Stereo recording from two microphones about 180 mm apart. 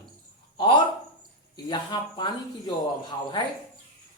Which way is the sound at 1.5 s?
25° left (ahead or behind).